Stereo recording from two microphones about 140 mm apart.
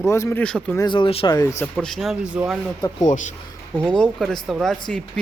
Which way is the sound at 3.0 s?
60° left (ahead or behind).